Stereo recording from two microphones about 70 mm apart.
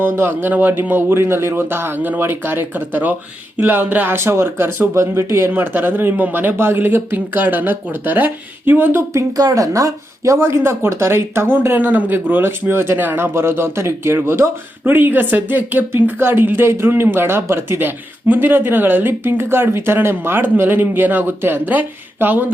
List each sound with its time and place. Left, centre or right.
0.0 s a man's voice: right
4.2 s a man's voice: right
9.3 s speech: right